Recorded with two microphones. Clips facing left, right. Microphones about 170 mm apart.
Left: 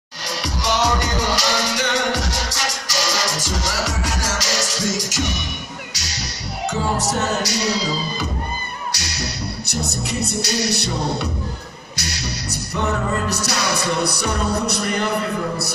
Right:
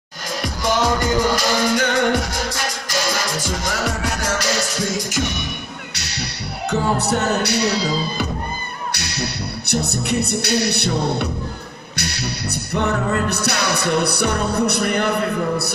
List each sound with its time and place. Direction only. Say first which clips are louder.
0.4 s music: right 1 dB; 50° right (ahead or behind)
6.7 s music: right 3 dB; 60° right (ahead or behind)